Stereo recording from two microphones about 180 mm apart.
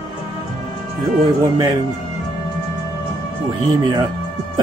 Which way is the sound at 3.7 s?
25° right (ahead or behind).